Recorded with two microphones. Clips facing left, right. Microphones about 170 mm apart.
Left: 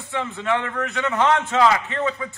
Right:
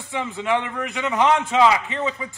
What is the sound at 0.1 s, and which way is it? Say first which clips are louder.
A man's voice: right 1 dB; 15° right (ahead or behind).